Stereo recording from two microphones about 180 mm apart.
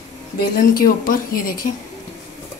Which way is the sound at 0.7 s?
50° left (ahead or behind).